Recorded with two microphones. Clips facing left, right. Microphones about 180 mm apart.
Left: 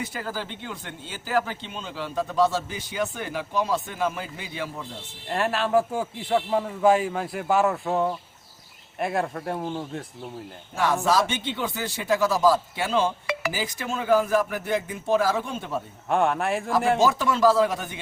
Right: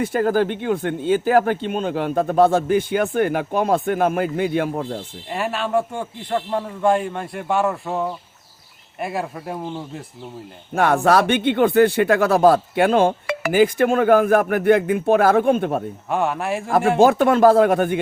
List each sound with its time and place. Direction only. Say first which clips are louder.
0.0 s speech: right 13 dB; 55° right (ahead or behind)
5.3 s a man's voice: right 1 dB; centre (ahead or behind)
10.8 s speech: right 6 dB; 60° right (ahead or behind)
16.0 s a man's voice: even; centre (ahead or behind)
17.0 s speech: right 11 dB; 55° right (ahead or behind)